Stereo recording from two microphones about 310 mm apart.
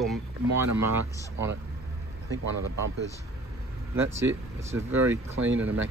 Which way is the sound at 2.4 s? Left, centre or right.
Right.